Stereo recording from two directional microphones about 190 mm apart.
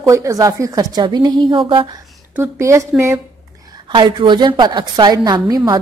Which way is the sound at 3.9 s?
25° right (ahead or behind).